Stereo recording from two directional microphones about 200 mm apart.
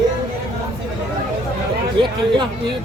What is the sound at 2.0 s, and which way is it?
Speech, 25° right (ahead or behind).